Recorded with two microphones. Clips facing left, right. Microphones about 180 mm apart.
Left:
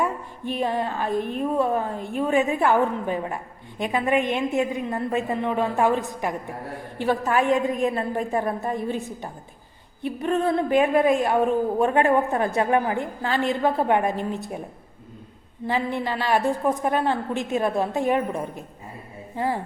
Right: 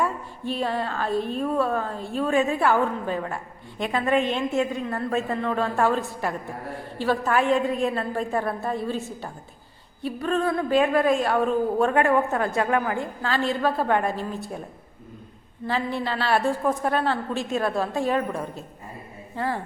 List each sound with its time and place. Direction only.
0.0 s a woman's voice: 15° left (ahead or behind)
15.6 s a woman's voice: 15° left (ahead or behind)